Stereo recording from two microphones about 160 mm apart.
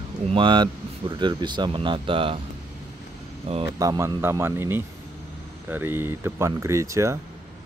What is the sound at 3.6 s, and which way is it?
Speech, 20° right (ahead or behind).